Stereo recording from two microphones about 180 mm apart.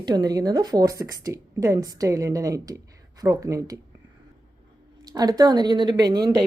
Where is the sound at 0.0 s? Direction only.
20° right (ahead or behind).